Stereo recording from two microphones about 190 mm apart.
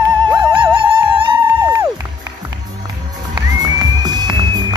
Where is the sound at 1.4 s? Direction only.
10° right (ahead or behind).